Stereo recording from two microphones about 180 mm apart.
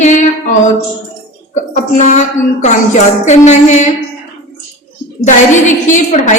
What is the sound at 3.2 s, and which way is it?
Speech, 40° left (ahead or behind).